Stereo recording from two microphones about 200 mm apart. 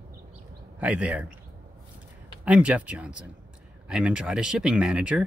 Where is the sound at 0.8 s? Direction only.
5° right (ahead or behind).